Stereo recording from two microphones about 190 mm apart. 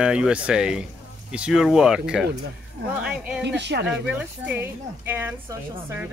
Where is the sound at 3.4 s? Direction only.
65° right (ahead or behind).